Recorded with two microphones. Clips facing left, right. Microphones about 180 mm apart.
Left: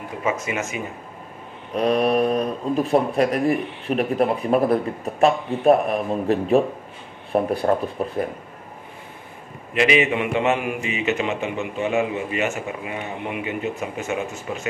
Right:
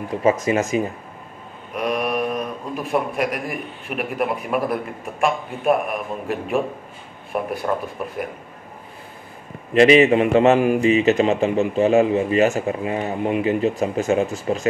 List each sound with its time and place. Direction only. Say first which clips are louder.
0.2 s speech: right 6 dB; 35° right (ahead or behind)
1.7 s speech: left 4 dB; 30° left (ahead or behind)
9.8 s speech: right 7 dB; 35° right (ahead or behind)